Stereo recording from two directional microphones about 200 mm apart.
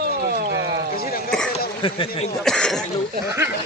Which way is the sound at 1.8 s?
25° left (ahead or behind).